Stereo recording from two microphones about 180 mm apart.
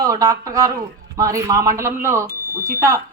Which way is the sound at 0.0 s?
20° right (ahead or behind).